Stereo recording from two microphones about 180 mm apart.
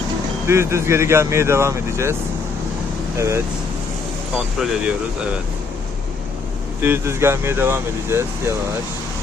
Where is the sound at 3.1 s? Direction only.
15° right (ahead or behind).